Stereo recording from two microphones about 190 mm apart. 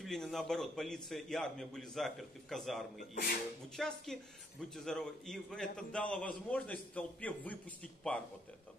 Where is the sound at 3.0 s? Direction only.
50° left (ahead or behind).